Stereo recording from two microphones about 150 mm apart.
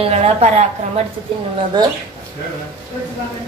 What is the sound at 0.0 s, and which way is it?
A woman's voice, 45° right (ahead or behind).